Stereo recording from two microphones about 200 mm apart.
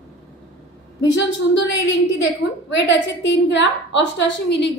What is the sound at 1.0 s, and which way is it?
Speech, 65° left (ahead or behind).